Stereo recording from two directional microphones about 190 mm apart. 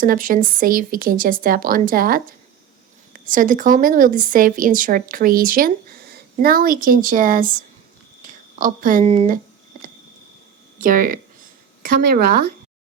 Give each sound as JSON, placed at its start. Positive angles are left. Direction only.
{"t": 0.0, "sound": "a woman's voice", "side_deg": -45}
{"t": 8.2, "sound": "a sound", "side_deg": -45}
{"t": 9.1, "sound": "speech", "side_deg": -40}
{"t": 10.8, "sound": "a woman's voice", "side_deg": -45}